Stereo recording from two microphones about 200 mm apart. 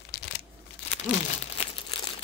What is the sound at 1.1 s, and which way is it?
Crumpling, 30° left (ahead or behind).